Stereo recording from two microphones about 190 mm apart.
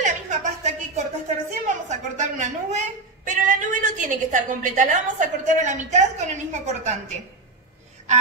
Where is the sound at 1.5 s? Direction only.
40° right (ahead or behind).